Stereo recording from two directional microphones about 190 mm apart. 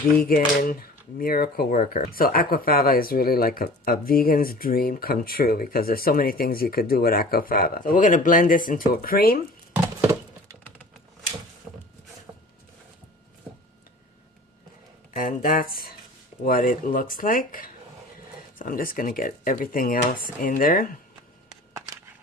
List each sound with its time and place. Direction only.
0.2 s speech: 50° left (ahead or behind)
9.7 s a sound: 10° right (ahead or behind)
15.1 s speech: 45° left (ahead or behind)